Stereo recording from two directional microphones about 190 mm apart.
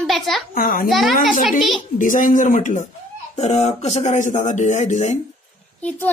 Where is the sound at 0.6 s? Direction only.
45° left (ahead or behind).